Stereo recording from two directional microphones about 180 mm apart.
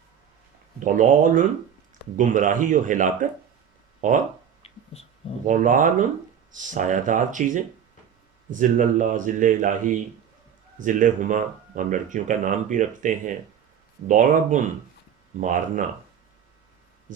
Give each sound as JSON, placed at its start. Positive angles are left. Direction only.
{"t": 0.9, "sound": "speech", "side_deg": -45}
{"t": 4.6, "sound": "a sound", "side_deg": 35}
{"t": 5.5, "sound": "speech", "side_deg": -45}